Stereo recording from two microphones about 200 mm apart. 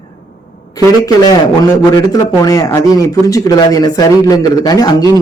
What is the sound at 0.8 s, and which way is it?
Speech, 20° left (ahead or behind).